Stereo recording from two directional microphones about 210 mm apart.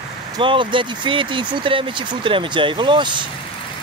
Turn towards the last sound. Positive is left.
turn(degrees=-20)  # may be behind; listen again after turning